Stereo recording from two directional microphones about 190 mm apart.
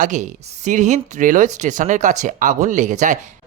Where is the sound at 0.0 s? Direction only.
40° right (ahead or behind).